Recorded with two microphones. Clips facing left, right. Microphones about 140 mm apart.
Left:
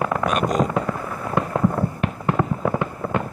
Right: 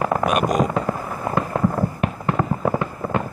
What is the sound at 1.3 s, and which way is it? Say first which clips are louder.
Fireworks: left 1 dB; 5° right (ahead or behind).